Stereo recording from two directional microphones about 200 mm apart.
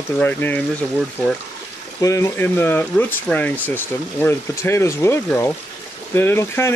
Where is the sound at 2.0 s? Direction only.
15° left (ahead or behind).